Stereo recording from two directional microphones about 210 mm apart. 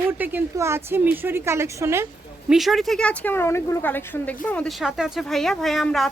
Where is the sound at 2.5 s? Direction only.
Centre (ahead or behind).